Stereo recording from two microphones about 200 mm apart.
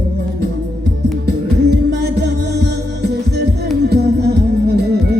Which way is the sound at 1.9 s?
55° right (ahead or behind).